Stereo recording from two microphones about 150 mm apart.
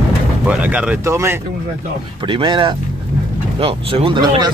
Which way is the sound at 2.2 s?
35° right (ahead or behind).